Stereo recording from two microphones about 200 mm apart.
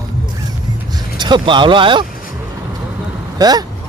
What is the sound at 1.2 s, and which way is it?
Speech, 25° right (ahead or behind).